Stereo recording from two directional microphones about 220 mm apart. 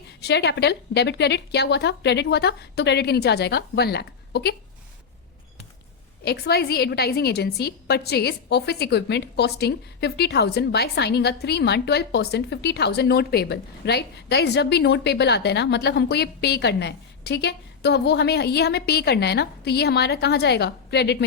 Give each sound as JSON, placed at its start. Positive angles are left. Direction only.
{"t": 0.2, "sound": "a woman's voice", "side_deg": 50}
{"t": 6.2, "sound": "a woman's voice", "side_deg": 45}